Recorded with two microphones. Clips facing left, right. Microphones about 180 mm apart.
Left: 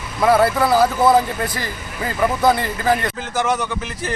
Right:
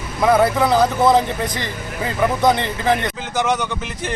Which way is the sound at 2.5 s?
20° right (ahead or behind).